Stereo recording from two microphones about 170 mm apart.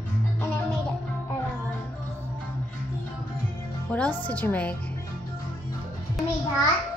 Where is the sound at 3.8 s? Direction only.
5° left (ahead or behind).